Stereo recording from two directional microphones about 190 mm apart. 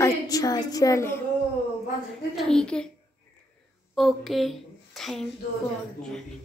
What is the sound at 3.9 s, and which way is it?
A woman's voice, centre (ahead or behind).